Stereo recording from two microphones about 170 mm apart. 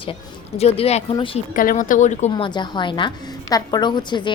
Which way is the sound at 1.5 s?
50° left (ahead or behind).